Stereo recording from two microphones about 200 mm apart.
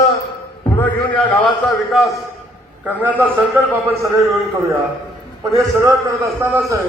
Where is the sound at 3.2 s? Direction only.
10° right (ahead or behind).